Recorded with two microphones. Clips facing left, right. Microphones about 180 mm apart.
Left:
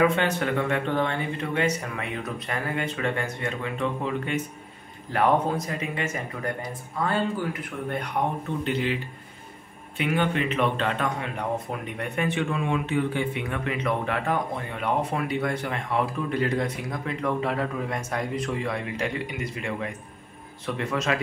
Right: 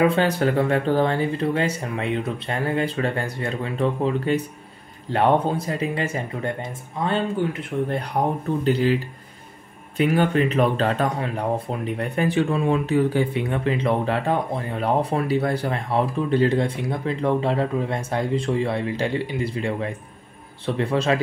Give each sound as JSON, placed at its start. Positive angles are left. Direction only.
{"t": 0.0, "sound": "speech", "side_deg": -35}
{"t": 9.9, "sound": "speech", "side_deg": -40}